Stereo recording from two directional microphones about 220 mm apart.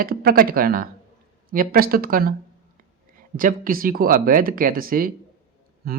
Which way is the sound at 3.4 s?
40° right (ahead or behind).